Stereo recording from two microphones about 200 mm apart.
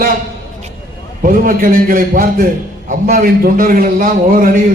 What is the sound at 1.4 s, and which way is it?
A man's voice, 45° right (ahead or behind).